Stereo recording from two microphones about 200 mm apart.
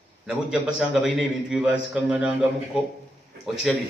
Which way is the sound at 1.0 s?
Centre (ahead or behind).